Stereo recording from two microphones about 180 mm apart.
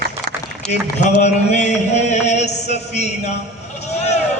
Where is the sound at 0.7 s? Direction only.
40° left (ahead or behind).